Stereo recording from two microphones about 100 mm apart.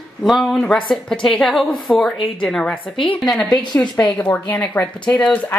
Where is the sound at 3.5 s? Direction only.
45° left (ahead or behind).